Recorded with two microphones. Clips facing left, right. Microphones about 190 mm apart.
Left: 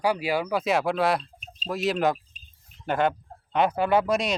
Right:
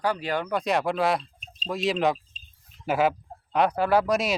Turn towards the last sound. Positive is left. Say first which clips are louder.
# even
turn(degrees=0)  # may be behind; listen again after turning